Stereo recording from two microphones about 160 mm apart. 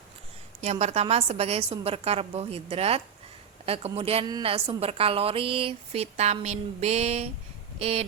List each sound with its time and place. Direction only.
0.6 s a woman's voice: 45° right (ahead or behind)
4.3 s a woman's voice: 25° right (ahead or behind)
4.5 s a woman's voice: 40° right (ahead or behind)